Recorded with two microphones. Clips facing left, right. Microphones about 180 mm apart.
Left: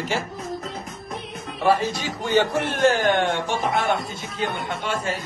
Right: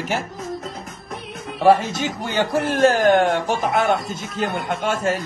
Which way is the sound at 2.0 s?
40° right (ahead or behind).